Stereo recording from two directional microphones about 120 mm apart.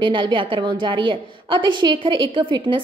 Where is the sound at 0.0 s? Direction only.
45° right (ahead or behind).